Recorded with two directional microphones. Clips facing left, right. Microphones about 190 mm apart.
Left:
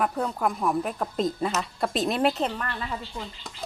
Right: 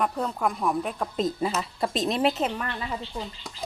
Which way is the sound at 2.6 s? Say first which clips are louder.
Right 1 dB; 15° right (ahead or behind).